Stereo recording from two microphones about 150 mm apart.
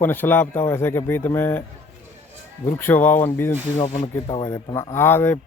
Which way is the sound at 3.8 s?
50° left (ahead or behind).